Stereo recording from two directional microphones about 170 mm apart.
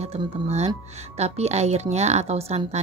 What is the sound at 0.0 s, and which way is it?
A woman's voice, 35° right (ahead or behind).